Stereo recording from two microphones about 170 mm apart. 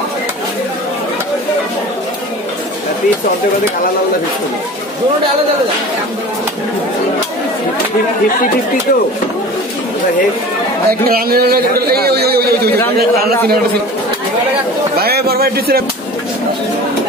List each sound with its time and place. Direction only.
10.9 s a man's voice: 60° right (ahead or behind)
15.0 s speech: 65° right (ahead or behind)